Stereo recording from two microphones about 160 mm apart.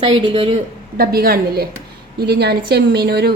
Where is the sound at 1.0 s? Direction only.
75° right (ahead or behind).